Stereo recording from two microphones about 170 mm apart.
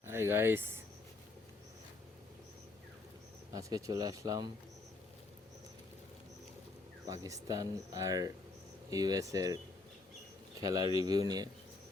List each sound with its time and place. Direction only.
0.0 s speech: 15° right (ahead or behind)
3.5 s speech: 20° right (ahead or behind)
7.1 s speech: 20° right (ahead or behind)
10.6 s speech: 20° right (ahead or behind)